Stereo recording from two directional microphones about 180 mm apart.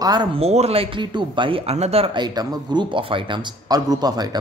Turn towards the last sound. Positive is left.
turn(degrees=-20)  # may be behind; listen again after turning